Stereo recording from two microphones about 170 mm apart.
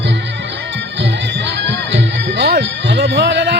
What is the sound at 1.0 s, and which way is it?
Music, 90° right.